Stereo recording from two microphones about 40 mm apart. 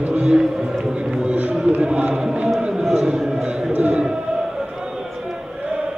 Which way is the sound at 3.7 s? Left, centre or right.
Right.